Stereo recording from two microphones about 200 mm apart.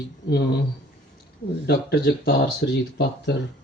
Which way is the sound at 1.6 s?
55° left (ahead or behind).